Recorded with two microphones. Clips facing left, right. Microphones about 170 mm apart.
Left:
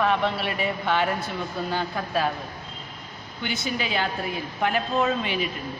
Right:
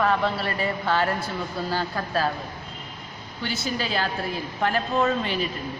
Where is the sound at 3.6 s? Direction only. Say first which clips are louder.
Even; 5° left (ahead or behind).